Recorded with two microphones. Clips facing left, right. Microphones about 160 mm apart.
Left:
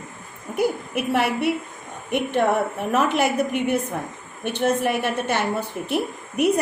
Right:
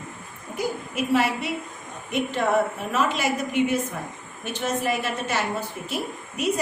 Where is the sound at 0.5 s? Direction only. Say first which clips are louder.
Left 5 dB; 60° left (ahead or behind).